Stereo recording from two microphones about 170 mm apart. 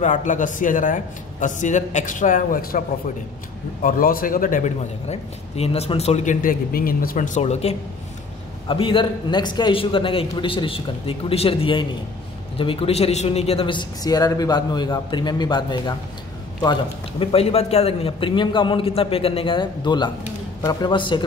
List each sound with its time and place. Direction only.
0.0 s a man's voice: 45° left (ahead or behind)
3.8 s a man's voice: 55° left (ahead or behind); by 15.9 s 25° left (ahead or behind)
17.2 s a man's voice: 35° left (ahead or behind)